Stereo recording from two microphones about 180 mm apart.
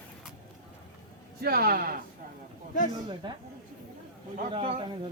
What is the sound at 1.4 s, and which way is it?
Speech, 60° right (ahead or behind).